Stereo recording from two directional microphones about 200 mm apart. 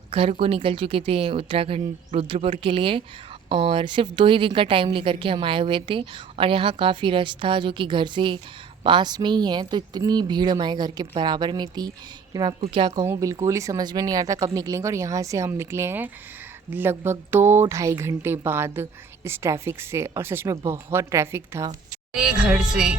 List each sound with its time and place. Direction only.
0.1 s a woman's voice: 30° right (ahead or behind); by 23.0 s 5° right (ahead or behind)